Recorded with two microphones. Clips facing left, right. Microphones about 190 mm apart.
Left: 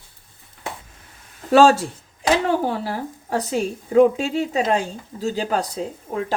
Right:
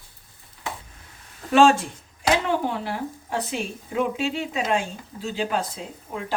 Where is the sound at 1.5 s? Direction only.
40° left (ahead or behind).